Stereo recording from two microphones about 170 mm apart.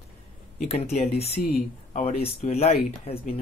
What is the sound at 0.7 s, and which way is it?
Speech, 40° left (ahead or behind).